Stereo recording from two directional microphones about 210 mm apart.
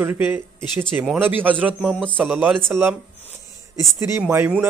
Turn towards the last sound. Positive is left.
turn(degrees=-10)  # may be behind; listen again after turning